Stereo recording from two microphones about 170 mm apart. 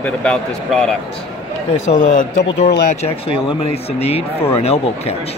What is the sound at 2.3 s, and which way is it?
Speech, 90° left.